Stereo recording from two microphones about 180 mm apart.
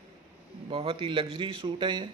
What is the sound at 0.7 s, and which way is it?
A man's voice, 30° right (ahead or behind).